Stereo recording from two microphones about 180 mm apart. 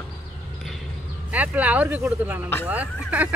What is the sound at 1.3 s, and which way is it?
Speech, 10° right (ahead or behind).